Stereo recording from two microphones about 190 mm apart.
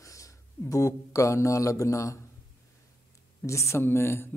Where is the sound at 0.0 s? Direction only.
15° left (ahead or behind).